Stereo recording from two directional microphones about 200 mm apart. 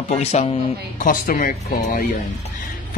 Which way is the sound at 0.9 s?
45° left (ahead or behind).